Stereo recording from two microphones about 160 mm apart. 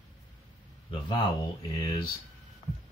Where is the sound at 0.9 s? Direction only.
35° left (ahead or behind).